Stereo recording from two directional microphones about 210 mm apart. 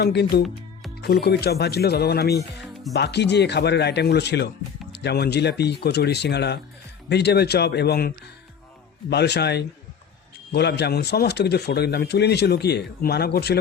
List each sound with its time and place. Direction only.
0.0 s speech: 50° left (ahead or behind)